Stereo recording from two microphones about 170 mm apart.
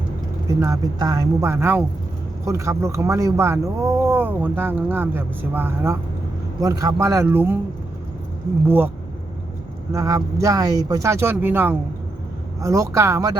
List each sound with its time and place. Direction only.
0.6 s speech: 20° right (ahead or behind)
8.6 s speech: 10° right (ahead or behind)
9.9 s speech: 20° right (ahead or behind)